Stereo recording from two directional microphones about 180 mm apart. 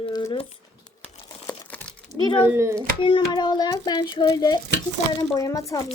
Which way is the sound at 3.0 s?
30° left (ahead or behind).